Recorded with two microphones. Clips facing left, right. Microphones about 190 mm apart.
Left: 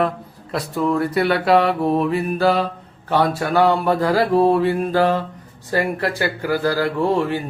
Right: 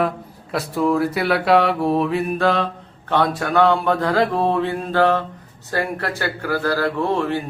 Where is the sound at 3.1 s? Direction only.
5° left (ahead or behind).